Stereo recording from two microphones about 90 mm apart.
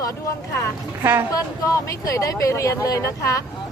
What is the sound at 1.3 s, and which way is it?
Speech, 40° left (ahead or behind).